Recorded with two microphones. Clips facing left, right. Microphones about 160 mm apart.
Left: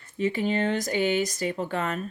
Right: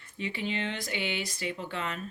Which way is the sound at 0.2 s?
45° left (ahead or behind).